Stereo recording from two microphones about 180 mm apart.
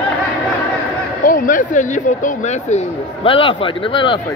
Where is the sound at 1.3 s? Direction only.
50° left (ahead or behind); by 4.1 s 30° left (ahead or behind).